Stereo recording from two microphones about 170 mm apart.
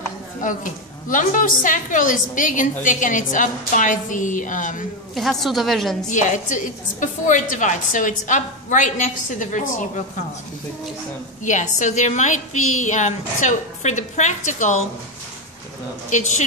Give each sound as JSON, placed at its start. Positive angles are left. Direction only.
{"t": 0.4, "sound": "a woman's voice", "side_deg": 50}
{"t": 5.1, "sound": "a woman's voice", "side_deg": 0}
{"t": 6.0, "sound": "a woman's voice", "side_deg": 45}
{"t": 11.4, "sound": "a woman's voice", "side_deg": 45}
{"t": 16.1, "sound": "a woman's voice", "side_deg": 45}